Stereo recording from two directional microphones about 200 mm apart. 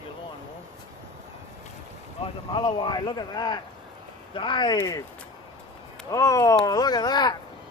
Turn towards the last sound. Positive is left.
turn(degrees=20)  # may be behind; listen again after turning